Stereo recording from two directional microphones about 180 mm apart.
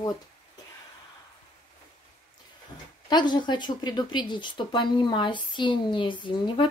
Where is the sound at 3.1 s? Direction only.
25° left (ahead or behind).